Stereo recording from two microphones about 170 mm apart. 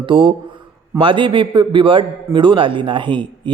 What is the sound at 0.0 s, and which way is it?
A man's voice, 30° right (ahead or behind).